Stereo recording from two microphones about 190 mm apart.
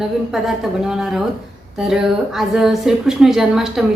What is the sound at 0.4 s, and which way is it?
A woman's voice, centre (ahead or behind).